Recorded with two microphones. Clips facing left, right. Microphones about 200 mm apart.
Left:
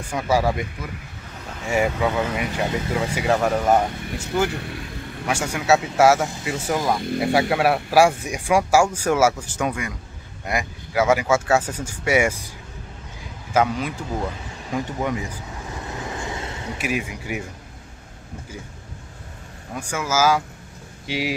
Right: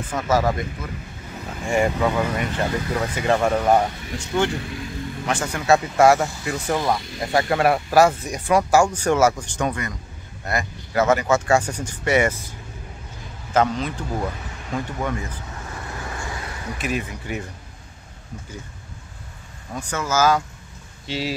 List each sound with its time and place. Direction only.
0.0 s speech: 10° left (ahead or behind)
13.5 s speech: 10° left (ahead or behind)
14.7 s vehicle: 15° left (ahead or behind)
16.7 s speech: 10° left (ahead or behind)
19.7 s speech: 10° left (ahead or behind)